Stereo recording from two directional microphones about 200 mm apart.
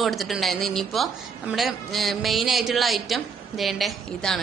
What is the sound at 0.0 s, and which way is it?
A man's voice, centre (ahead or behind).